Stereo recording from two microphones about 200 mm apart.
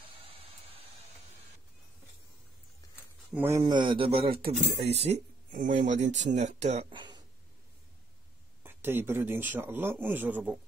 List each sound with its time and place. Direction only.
0.2 s a sound: 30° right (ahead or behind)
3.3 s speech: 15° right (ahead or behind)
8.6 s a man's voice: 10° right (ahead or behind)